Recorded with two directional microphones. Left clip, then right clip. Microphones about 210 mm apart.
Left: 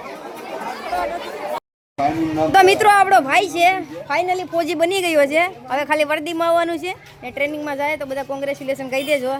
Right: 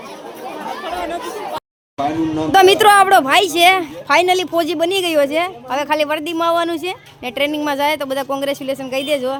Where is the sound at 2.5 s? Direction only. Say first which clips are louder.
Right 3 dB; 10° right (ahead or behind); by 4.6 s 30° right (ahead or behind).